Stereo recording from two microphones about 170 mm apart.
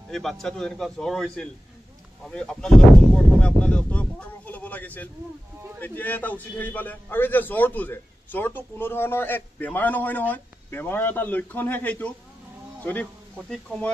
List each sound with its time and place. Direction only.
0.1 s a man's voice: centre (ahead or behind)